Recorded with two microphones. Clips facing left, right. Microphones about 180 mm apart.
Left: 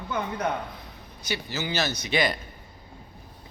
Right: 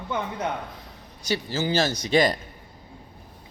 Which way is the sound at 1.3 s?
45° right (ahead or behind).